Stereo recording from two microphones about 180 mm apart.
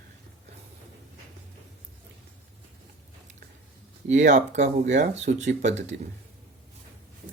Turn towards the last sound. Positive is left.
turn(degrees=-40)  # may be behind; listen again after turning